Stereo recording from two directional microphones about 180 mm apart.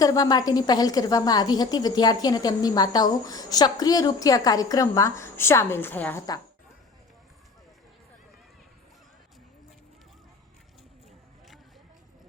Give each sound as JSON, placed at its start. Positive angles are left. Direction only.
{"t": 0.0, "sound": "a woman's voice", "side_deg": 20}